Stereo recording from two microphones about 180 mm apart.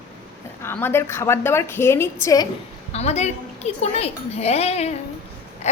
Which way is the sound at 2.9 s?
35° left (ahead or behind).